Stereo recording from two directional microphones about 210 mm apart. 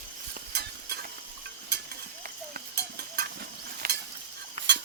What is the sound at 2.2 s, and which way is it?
Stir, 45° right (ahead or behind).